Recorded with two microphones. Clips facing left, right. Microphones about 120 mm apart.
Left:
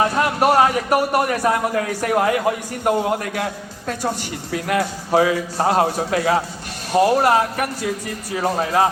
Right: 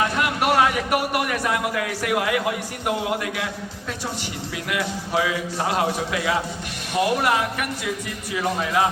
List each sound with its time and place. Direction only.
0.0 s a man's voice: 40° left (ahead or behind)